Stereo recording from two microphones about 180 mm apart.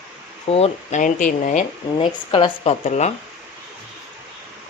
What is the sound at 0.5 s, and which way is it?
Speech, 35° left (ahead or behind).